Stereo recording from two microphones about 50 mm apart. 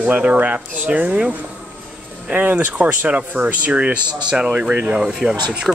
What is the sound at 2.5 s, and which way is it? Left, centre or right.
Speech, right.